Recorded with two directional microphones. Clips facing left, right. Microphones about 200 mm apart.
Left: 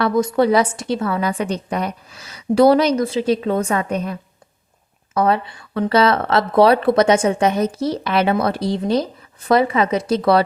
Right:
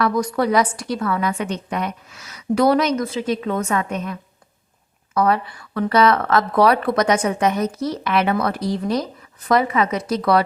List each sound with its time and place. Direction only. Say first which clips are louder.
0.0 s a woman's voice: left 3 dB; 25° left (ahead or behind)